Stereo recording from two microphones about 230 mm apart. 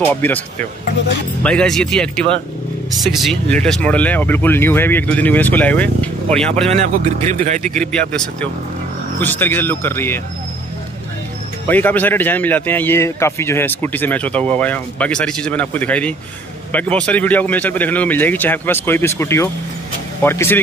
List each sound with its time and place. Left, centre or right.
0.1 s speech: centre
7.2 s speech: right
7.7 s speech: centre
11.6 s speech: centre